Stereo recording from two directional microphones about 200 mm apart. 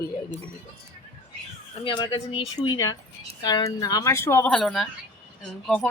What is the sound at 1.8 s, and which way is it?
Speech, 25° left (ahead or behind).